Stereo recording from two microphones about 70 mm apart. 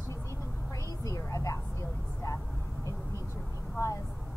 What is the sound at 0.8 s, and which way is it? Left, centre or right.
Vehicle, left.